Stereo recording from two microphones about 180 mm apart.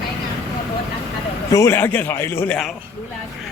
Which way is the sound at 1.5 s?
15° left (ahead or behind).